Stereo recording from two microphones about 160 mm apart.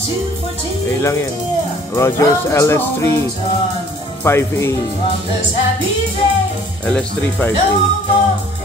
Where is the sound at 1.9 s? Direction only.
15° left (ahead or behind).